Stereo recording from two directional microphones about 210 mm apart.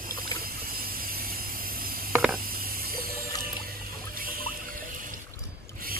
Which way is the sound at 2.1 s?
5° right (ahead or behind).